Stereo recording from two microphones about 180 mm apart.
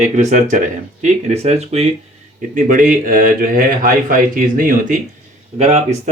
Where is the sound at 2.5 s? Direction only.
45° right (ahead or behind).